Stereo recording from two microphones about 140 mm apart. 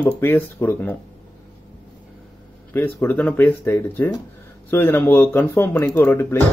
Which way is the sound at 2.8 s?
15° left (ahead or behind).